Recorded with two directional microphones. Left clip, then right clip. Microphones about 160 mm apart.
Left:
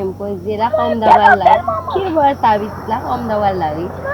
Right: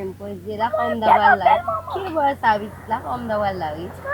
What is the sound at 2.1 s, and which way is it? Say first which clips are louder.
A woman's voice: left 5 dB; 30° right (ahead or behind).